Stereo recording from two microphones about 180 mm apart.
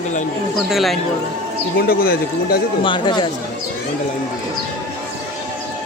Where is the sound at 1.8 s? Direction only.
55° left (ahead or behind).